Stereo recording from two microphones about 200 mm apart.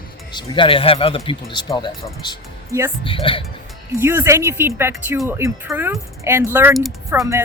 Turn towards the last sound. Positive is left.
turn(degrees=-10)  # may be behind; listen again after turning